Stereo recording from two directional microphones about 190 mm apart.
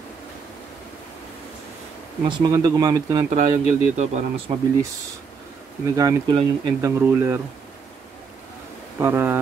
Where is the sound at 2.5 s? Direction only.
20° right (ahead or behind).